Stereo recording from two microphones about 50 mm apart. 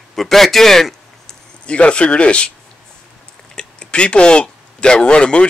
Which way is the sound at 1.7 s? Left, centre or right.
Left.